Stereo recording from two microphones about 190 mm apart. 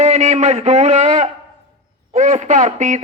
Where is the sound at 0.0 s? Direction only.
35° right (ahead or behind).